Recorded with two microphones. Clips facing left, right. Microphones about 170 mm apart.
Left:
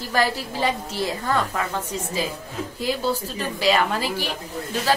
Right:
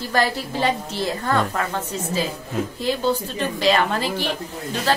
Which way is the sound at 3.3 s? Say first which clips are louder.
Even; 5° left (ahead or behind).